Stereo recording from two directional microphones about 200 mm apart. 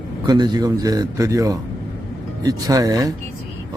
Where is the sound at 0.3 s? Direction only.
20° right (ahead or behind).